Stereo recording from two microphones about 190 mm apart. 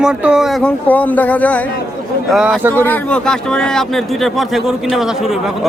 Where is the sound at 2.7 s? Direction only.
10° left (ahead or behind).